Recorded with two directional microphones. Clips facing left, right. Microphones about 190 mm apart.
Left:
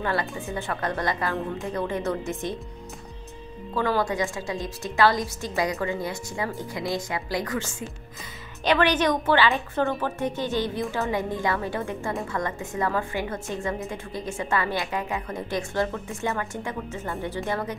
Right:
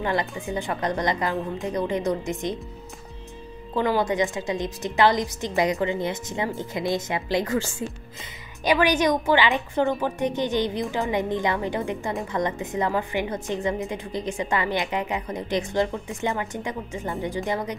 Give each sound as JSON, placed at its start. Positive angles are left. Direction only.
{"t": 0.0, "sound": "a woman's voice", "side_deg": -15}
{"t": 3.7, "sound": "a woman's voice", "side_deg": -20}
{"t": 8.6, "sound": "a woman's voice", "side_deg": -10}